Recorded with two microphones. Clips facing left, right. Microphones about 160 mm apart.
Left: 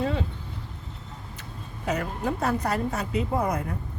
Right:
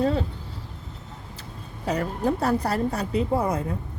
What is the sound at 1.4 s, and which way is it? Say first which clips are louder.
A woman's voice: right 1 dB; 35° right (ahead or behind).